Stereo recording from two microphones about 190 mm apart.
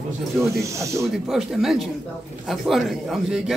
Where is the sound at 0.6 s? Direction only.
15° right (ahead or behind).